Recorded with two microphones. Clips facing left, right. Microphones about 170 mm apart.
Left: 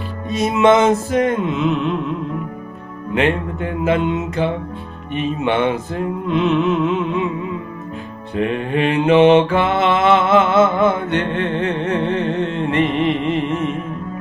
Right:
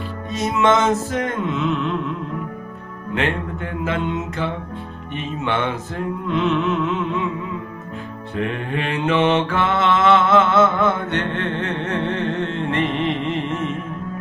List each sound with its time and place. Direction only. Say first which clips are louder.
0.3 s mantra: left 4 dB; 10° left (ahead or behind)
3.2 s mantra: left 5 dB; 20° left (ahead or behind)
8.4 s mantra: left 6 dB; 20° left (ahead or behind)